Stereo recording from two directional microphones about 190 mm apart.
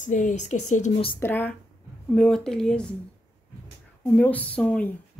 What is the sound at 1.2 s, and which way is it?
A woman's voice, 10° left (ahead or behind).